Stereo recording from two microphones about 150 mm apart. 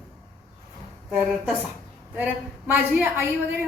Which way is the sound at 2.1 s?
10° right (ahead or behind).